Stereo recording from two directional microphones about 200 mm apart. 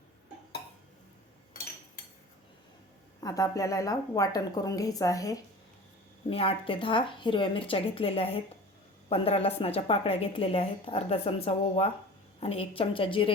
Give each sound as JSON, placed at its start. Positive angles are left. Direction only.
{"t": 3.2, "sound": "a woman's voice", "side_deg": 20}
{"t": 6.3, "sound": "speech", "side_deg": 30}